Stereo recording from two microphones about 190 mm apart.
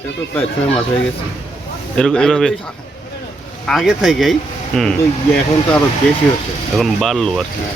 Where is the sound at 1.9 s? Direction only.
5° left (ahead or behind).